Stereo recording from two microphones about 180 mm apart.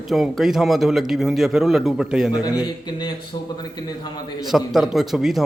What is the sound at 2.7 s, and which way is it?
A man's voice, 25° left (ahead or behind).